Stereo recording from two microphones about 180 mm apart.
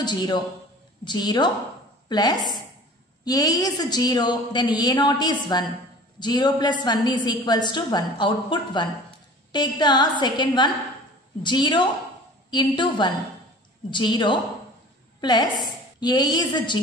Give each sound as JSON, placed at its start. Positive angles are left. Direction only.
{"t": 0.0, "sound": "a woman's voice", "side_deg": 25}